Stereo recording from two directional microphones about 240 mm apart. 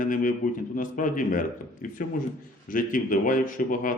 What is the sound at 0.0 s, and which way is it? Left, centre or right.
A man's voice, left.